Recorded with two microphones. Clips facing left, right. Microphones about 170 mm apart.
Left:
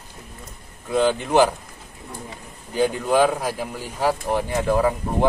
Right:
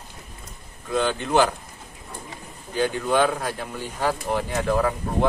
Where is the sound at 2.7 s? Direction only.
10° left (ahead or behind).